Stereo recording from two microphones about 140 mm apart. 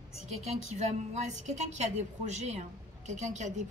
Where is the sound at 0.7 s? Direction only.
55° right (ahead or behind).